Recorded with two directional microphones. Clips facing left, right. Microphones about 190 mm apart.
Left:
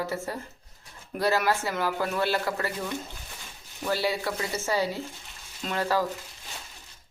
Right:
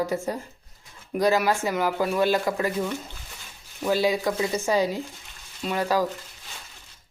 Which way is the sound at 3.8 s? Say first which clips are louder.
Right 5 dB; 15° right (ahead or behind).